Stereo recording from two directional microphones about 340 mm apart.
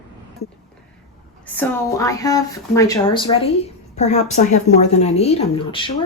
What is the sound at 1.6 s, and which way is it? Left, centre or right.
Speech, centre.